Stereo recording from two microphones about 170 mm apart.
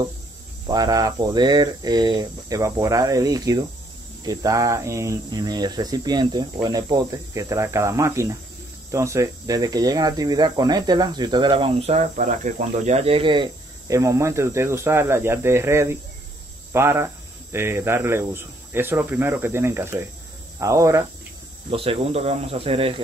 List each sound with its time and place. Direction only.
0.7 s speech: 20° right (ahead or behind)
21.6 s speech: 35° right (ahead or behind)